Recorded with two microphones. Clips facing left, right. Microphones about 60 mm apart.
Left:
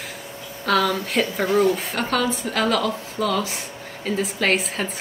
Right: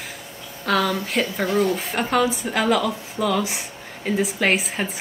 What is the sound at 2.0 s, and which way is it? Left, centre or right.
A woman's voice, centre.